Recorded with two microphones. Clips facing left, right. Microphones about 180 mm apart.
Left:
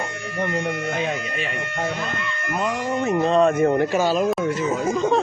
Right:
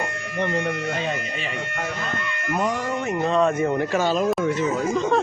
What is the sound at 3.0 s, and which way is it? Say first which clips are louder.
Speech: left 4 dB; 35° left (ahead or behind).